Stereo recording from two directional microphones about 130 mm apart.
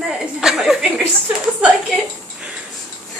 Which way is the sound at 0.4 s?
5° right (ahead or behind).